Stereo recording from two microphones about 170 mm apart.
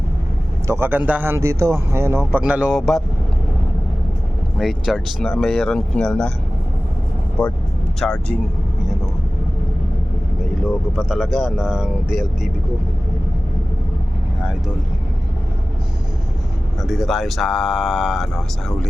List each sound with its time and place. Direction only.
0.7 s speech: 10° right (ahead or behind)
4.5 s speech: centre (ahead or behind)
7.9 s speech: 5° left (ahead or behind)
10.9 s speech: centre (ahead or behind)
16.8 s speech: centre (ahead or behind)